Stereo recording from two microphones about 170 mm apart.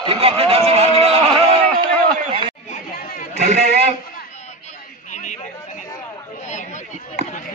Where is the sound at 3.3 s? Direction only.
70° right (ahead or behind).